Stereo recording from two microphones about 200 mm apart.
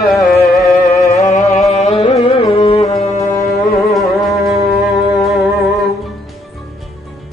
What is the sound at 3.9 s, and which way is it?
Music, centre (ahead or behind).